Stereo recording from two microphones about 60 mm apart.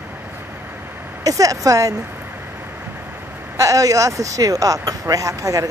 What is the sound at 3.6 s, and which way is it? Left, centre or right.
Speech, right.